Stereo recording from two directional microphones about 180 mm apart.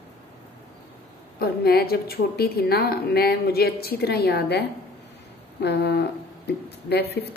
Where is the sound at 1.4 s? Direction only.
60° left (ahead or behind).